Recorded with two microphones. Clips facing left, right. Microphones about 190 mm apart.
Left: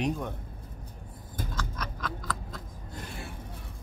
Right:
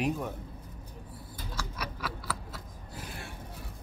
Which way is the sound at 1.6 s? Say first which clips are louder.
Right 3 dB; 10° right (ahead or behind).